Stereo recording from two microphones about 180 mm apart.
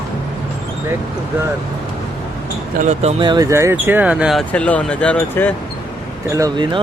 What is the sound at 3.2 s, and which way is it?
Speech, 20° right (ahead or behind).